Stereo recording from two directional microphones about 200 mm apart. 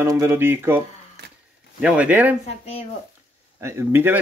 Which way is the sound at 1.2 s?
55° right (ahead or behind).